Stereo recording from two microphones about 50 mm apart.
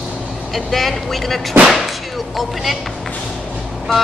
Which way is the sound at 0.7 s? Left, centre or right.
Centre.